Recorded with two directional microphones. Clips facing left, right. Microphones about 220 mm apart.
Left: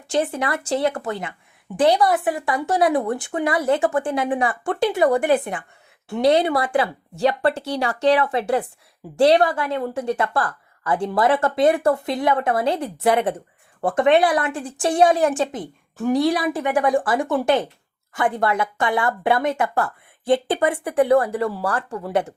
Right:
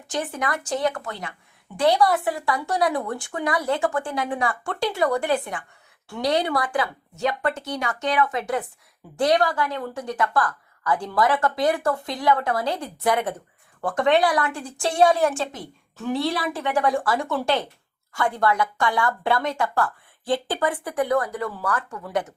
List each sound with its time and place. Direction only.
0.1 s a woman's voice: 25° left (ahead or behind)